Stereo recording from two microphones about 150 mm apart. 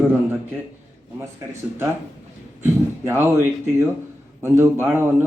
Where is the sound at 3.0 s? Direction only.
15° right (ahead or behind).